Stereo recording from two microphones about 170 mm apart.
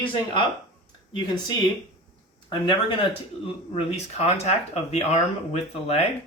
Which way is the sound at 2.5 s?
30° left (ahead or behind).